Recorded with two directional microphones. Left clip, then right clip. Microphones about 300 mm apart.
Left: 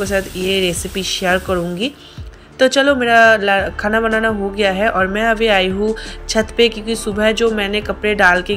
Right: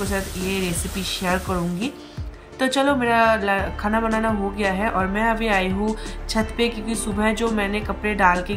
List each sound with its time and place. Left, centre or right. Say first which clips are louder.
0.1 s speech: left 8 dB; centre
2.6 s speech: left 7 dB; centre